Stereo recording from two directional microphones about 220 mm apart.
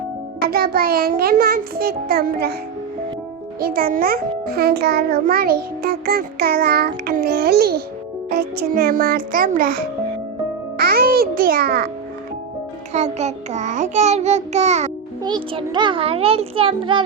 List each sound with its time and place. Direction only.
0.5 s a child's voice: 40° right (ahead or behind)
3.6 s a child's voice: 40° right (ahead or behind)
8.3 s child singing: 45° right (ahead or behind)
10.8 s music: 45° right (ahead or behind)
12.9 s child singing: 30° right (ahead or behind)
15.2 s a child's voice: 20° right (ahead or behind)